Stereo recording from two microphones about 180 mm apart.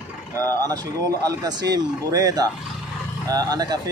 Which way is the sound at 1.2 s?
20° right (ahead or behind).